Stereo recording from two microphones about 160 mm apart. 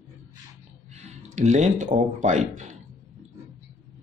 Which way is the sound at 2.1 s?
50° right (ahead or behind).